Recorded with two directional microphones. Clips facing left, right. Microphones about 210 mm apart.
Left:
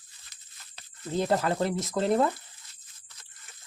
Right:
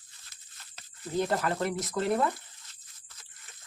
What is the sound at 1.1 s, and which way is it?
Speech, 25° left (ahead or behind).